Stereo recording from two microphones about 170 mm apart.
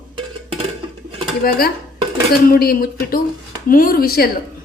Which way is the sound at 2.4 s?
60° left (ahead or behind).